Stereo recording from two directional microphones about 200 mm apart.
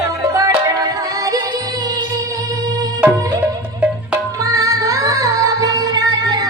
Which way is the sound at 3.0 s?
5° right (ahead or behind).